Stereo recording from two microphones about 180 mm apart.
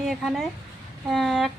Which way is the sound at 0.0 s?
Centre (ahead or behind).